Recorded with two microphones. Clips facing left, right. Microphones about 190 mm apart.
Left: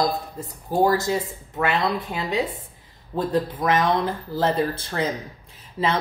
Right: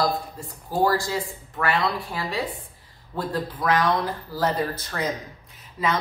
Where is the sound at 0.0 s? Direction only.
20° left (ahead or behind).